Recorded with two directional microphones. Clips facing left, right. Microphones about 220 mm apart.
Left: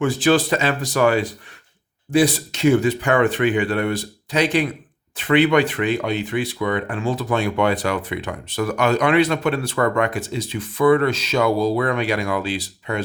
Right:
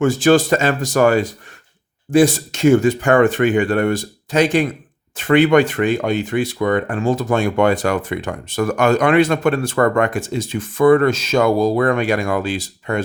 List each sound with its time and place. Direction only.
0.0 s speech: 45° right (ahead or behind)